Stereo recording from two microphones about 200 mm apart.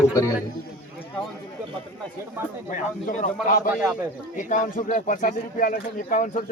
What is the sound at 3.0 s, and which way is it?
Speech, 40° left (ahead or behind).